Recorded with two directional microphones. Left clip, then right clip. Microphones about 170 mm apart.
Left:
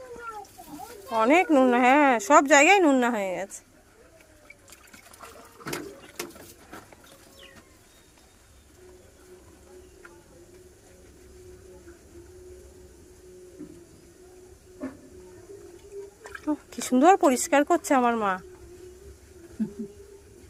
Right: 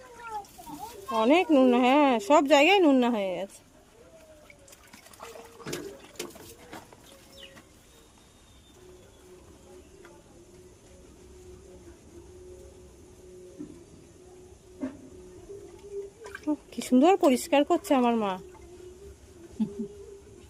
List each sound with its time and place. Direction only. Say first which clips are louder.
1.1 s a woman's voice: left 2 dB; 20° right (ahead or behind)
16.5 s speech: even; 20° right (ahead or behind)